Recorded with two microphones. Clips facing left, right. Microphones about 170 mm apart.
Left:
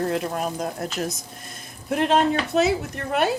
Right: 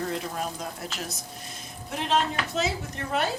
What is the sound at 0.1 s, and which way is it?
A woman's voice, 55° left (ahead or behind).